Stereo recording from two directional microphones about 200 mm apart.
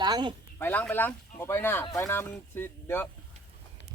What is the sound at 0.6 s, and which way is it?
Speech, 10° left (ahead or behind).